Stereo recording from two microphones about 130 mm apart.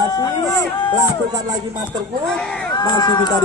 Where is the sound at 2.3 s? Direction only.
5° left (ahead or behind).